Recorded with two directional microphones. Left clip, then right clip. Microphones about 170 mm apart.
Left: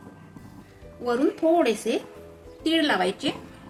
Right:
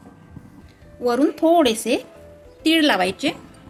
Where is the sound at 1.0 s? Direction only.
55° right (ahead or behind).